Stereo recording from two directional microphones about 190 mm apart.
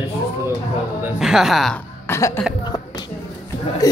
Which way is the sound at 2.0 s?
15° left (ahead or behind).